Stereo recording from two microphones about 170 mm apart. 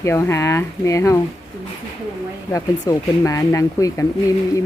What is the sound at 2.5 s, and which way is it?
Speech, 20° left (ahead or behind).